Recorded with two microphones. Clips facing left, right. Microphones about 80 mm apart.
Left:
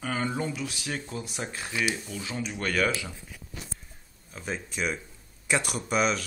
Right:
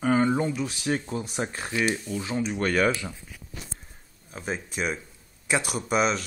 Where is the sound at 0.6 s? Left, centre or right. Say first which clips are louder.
Right 6 dB; right.